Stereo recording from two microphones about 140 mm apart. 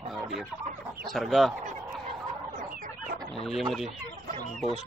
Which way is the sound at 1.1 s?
Centre (ahead or behind).